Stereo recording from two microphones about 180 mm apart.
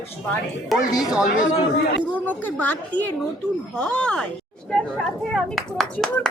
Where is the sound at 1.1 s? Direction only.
5° right (ahead or behind).